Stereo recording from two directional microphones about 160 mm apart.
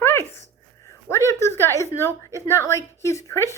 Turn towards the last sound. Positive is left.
turn(degrees=15)  # may be behind; listen again after turning